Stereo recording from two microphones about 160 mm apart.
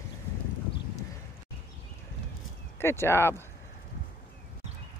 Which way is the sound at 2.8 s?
15° left (ahead or behind).